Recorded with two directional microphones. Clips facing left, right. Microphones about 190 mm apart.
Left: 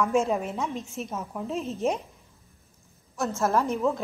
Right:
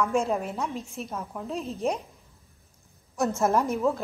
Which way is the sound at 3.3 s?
15° right (ahead or behind).